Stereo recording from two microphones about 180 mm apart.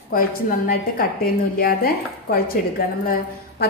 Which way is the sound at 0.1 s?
55° left (ahead or behind).